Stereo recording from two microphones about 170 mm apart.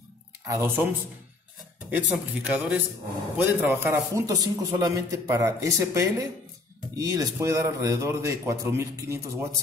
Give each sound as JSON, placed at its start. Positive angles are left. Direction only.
{"t": 0.5, "sound": "a man's voice", "side_deg": -15}
{"t": 1.9, "sound": "a man's voice", "side_deg": -10}